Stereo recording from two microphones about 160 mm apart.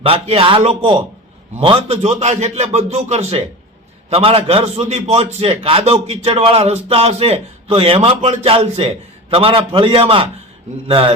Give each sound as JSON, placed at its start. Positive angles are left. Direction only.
{"t": 0.0, "sound": "a man's voice", "side_deg": -35}